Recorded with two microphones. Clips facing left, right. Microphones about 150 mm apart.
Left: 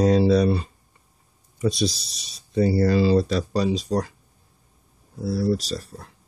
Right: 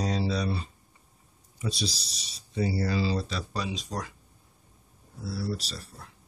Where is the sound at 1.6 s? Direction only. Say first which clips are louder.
Left 10 dB; 50° left (ahead or behind); by 4.1 s 35° left (ahead or behind).